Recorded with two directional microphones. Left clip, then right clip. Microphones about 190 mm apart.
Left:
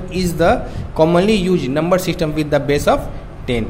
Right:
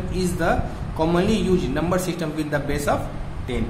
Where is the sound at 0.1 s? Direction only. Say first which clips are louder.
Left 8 dB; 40° left (ahead or behind).